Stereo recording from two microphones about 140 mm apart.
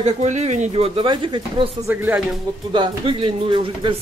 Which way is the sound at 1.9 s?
15° right (ahead or behind).